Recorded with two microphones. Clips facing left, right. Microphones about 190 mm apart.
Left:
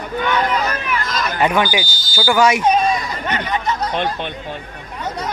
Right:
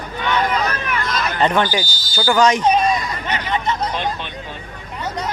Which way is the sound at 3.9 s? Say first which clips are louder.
Left 3 dB; 55° left (ahead or behind).